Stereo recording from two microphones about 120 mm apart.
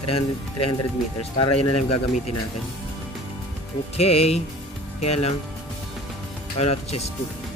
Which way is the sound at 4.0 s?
60° left (ahead or behind).